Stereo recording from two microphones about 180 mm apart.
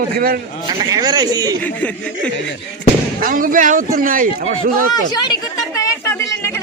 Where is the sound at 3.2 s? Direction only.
50° right (ahead or behind).